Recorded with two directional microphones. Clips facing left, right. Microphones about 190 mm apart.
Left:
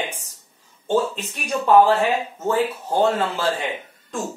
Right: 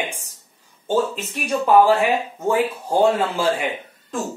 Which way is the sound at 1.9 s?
10° right (ahead or behind).